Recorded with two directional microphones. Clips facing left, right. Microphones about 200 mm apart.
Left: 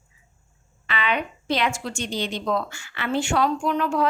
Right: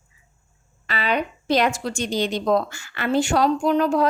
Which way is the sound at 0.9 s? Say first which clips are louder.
Right 2 dB; 40° right (ahead or behind).